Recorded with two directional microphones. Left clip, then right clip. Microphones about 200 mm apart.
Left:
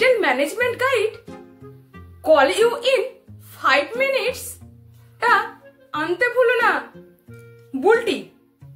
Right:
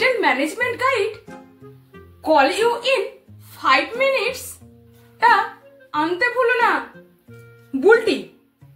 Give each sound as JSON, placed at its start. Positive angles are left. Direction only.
{"t": 0.0, "sound": "a woman's voice", "side_deg": 15}
{"t": 1.6, "sound": "music", "side_deg": 0}
{"t": 2.2, "sound": "a woman's voice", "side_deg": 15}
{"t": 5.9, "sound": "a woman's voice", "side_deg": 10}
{"t": 7.8, "sound": "a woman's voice", "side_deg": 10}